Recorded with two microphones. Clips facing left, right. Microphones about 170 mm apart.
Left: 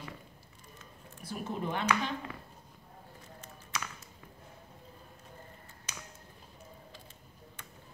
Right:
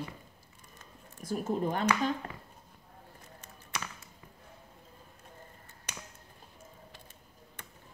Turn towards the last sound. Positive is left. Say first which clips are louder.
# right 2 dB
turn(degrees=-60)  # may be behind; listen again after turning